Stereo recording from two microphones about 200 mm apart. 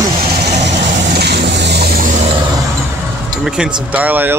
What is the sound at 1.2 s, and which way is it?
Vehicle, 55° right (ahead or behind).